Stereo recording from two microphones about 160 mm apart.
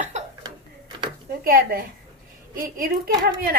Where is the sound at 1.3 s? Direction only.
65° right (ahead or behind).